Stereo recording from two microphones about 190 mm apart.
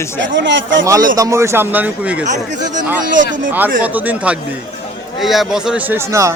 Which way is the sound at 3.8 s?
10° right (ahead or behind).